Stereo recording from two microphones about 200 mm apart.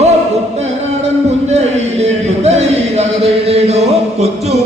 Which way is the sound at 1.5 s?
35° right (ahead or behind).